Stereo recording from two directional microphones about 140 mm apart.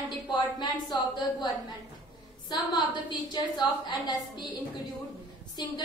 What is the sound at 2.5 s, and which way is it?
A woman's voice, 30° left (ahead or behind).